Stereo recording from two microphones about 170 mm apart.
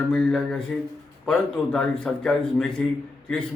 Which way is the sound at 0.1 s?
5° left (ahead or behind).